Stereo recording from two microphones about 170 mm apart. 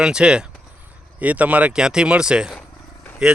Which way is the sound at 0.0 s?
5° right (ahead or behind).